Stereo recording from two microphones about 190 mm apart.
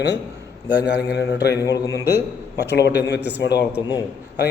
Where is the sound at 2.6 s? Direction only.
65° left (ahead or behind).